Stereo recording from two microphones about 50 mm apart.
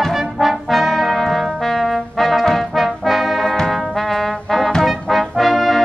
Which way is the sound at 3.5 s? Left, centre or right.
Centre.